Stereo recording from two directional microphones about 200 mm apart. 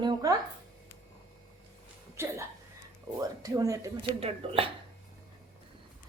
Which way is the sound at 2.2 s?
10° right (ahead or behind).